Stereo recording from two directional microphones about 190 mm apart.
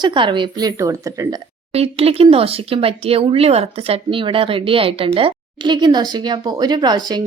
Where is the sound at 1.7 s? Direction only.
30° right (ahead or behind).